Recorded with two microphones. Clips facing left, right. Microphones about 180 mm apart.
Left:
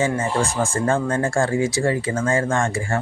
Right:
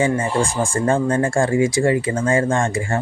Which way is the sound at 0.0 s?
15° right (ahead or behind).